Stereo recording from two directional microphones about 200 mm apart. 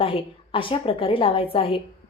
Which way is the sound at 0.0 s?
25° left (ahead or behind).